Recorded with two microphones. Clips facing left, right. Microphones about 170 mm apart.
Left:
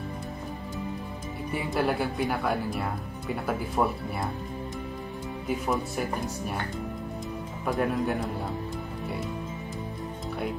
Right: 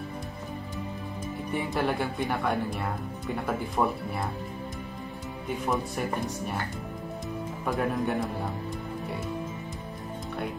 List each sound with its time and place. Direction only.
1.5 s speech: centre (ahead or behind)
5.5 s speech: centre (ahead or behind)
7.6 s speech: centre (ahead or behind)